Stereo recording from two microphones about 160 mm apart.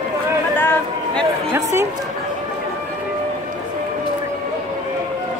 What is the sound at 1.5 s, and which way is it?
Speech, 15° right (ahead or behind).